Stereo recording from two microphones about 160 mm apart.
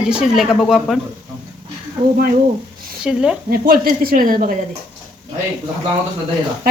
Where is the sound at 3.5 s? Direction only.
65° right (ahead or behind).